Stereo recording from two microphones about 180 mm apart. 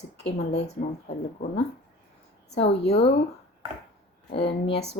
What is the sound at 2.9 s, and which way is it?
Speech, 35° left (ahead or behind).